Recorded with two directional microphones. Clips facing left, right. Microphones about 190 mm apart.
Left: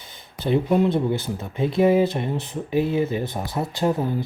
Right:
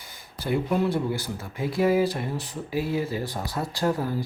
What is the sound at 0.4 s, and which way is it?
Speech, 25° left (ahead or behind).